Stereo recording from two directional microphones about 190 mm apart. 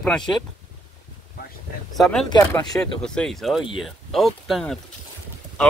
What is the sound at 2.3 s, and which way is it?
Speech, 15° left (ahead or behind).